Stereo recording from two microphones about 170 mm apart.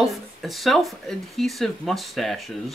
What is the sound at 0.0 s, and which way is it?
Speech, centre (ahead or behind).